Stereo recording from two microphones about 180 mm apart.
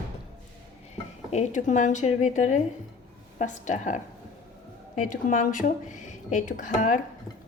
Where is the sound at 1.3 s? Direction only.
45° left (ahead or behind).